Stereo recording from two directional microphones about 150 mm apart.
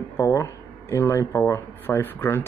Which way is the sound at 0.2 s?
20° left (ahead or behind).